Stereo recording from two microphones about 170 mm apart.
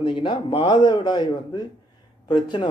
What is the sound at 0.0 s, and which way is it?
Speech, 30° left (ahead or behind).